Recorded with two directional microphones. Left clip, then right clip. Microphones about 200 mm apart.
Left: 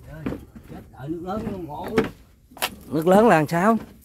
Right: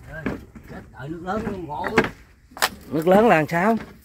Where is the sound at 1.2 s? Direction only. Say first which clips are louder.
Right 6 dB; 15° left (ahead or behind).